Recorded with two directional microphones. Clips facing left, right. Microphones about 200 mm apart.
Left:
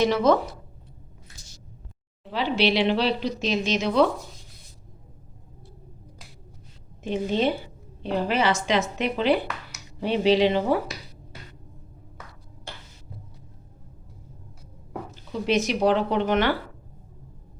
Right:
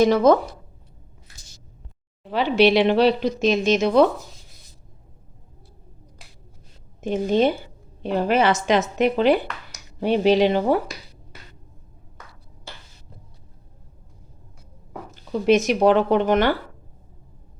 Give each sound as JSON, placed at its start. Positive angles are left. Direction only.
{"t": 0.0, "sound": "speech", "side_deg": -45}
{"t": 2.3, "sound": "speech", "side_deg": -50}
{"t": 7.0, "sound": "speech", "side_deg": -45}
{"t": 15.1, "sound": "speech", "side_deg": -50}